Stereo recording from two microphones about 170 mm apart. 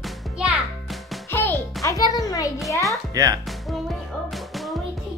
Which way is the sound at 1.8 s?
20° left (ahead or behind).